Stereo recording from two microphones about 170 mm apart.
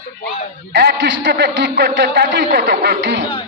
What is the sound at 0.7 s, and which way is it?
A man's voice, 85° right.